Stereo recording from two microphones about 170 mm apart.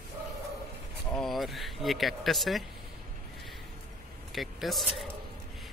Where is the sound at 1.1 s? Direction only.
Centre (ahead or behind).